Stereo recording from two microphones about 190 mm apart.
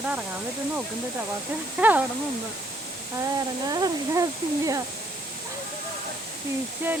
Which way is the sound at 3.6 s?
20° right (ahead or behind).